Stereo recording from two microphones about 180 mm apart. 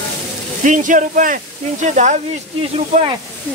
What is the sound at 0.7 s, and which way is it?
Speech, 45° right (ahead or behind).